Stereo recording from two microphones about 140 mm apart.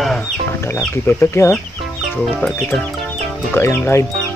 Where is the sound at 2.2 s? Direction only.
5° left (ahead or behind).